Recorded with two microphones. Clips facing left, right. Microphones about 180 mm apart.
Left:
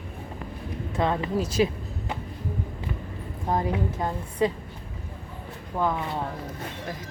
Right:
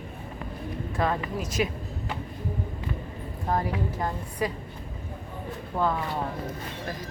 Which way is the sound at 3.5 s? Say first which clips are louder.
Left 2 dB; 20° left (ahead or behind).